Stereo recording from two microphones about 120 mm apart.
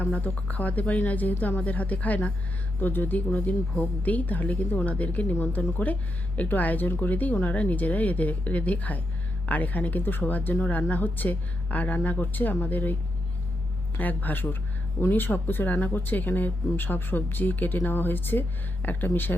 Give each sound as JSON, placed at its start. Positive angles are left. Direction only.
{"t": 0.0, "sound": "speech", "side_deg": 15}